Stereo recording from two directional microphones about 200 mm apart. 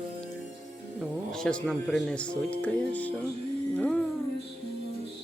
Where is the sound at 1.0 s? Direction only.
5° left (ahead or behind).